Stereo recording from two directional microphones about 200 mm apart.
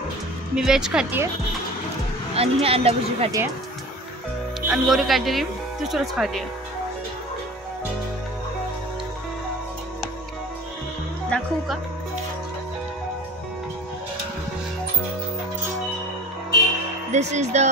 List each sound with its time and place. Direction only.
0.6 s speech: 5° right (ahead or behind)
2.3 s speech: 30° right (ahead or behind)
4.6 s speech: centre (ahead or behind)
11.2 s speech: centre (ahead or behind)
17.1 s speech: 35° right (ahead or behind)